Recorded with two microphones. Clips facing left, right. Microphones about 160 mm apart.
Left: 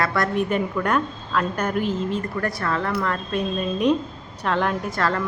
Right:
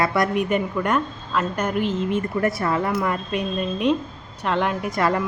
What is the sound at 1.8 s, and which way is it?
Speech, 40° left (ahead or behind).